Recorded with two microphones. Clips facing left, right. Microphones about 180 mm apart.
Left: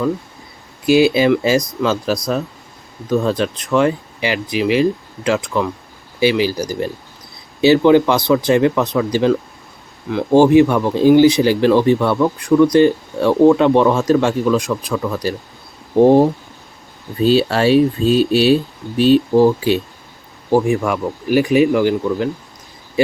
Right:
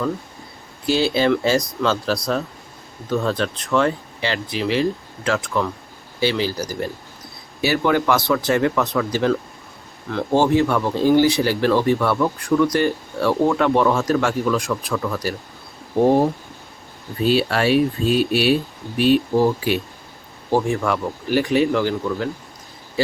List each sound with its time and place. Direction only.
0.9 s speech: 10° left (ahead or behind)
17.3 s speech: 30° left (ahead or behind)
20.5 s speech: 15° left (ahead or behind)